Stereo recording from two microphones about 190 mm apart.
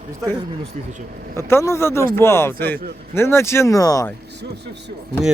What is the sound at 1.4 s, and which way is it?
Speech, 15° left (ahead or behind).